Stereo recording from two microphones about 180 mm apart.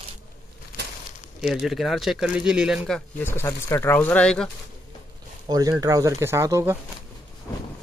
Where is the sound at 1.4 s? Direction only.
Centre (ahead or behind).